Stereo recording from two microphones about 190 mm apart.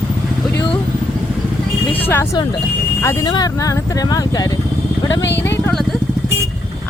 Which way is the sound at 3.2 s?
20° left (ahead or behind).